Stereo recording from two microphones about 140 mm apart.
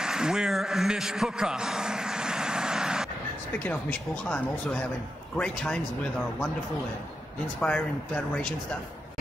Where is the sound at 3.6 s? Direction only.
10° left (ahead or behind).